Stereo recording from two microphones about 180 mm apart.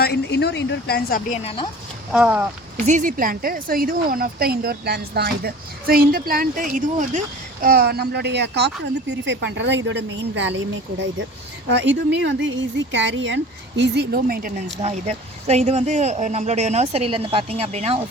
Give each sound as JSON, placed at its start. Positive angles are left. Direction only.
{"t": 0.0, "sound": "a woman's voice", "side_deg": 65}
{"t": 1.3, "sound": "speech", "side_deg": 35}
{"t": 2.1, "sound": "speech", "side_deg": -5}
{"t": 2.8, "sound": "a woman's voice", "side_deg": -45}
{"t": 7.6, "sound": "speech", "side_deg": -55}
{"t": 11.7, "sound": "speech", "side_deg": -90}
{"t": 14.8, "sound": "speech", "side_deg": -35}